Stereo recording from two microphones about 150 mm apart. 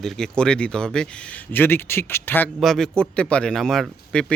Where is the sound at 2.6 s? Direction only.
Centre (ahead or behind).